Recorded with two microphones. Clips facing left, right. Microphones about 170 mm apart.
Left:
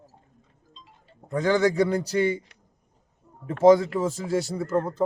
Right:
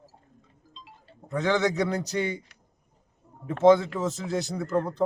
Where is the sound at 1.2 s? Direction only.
10° left (ahead or behind).